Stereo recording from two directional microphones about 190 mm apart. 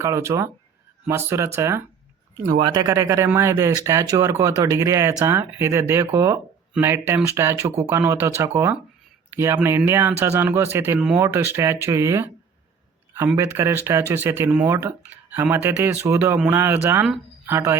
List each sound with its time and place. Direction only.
0.0 s speech: 15° right (ahead or behind)